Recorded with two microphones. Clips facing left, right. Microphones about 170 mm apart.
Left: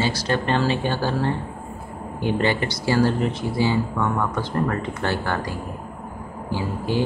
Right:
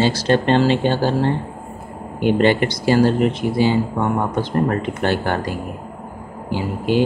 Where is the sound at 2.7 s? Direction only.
20° right (ahead or behind).